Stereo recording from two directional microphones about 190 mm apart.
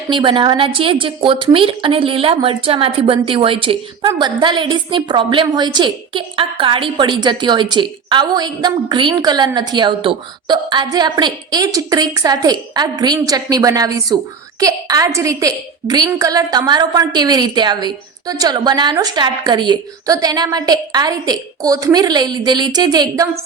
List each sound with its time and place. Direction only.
0.1 s a woman's voice: 25° right (ahead or behind)